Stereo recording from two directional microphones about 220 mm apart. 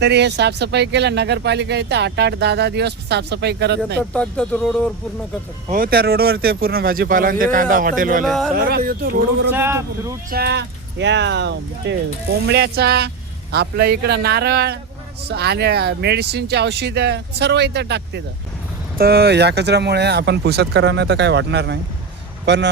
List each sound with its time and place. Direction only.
0.0 s speech: 50° right (ahead or behind)
4.1 s speech: 5° left (ahead or behind)
5.7 s speech: 40° right (ahead or behind)
8.2 s speech: centre (ahead or behind)
8.5 s speech: 40° right (ahead or behind)
9.5 s a man's voice: 10° right (ahead or behind)
10.2 s speech: 45° right (ahead or behind)